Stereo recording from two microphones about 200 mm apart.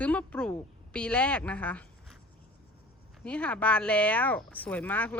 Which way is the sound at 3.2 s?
5° left (ahead or behind).